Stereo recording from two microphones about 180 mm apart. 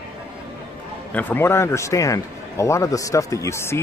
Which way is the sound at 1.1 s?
10° left (ahead or behind).